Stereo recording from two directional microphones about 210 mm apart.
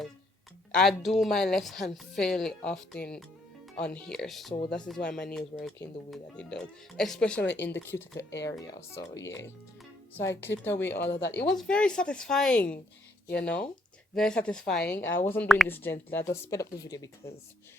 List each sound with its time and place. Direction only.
0.7 s a woman's voice: centre (ahead or behind)
10.9 s speech: 55° left (ahead or behind)
11.4 s a woman's voice: 5° left (ahead or behind)